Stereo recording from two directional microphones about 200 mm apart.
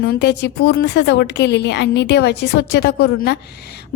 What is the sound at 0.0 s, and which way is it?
A woman's voice, 60° left (ahead or behind).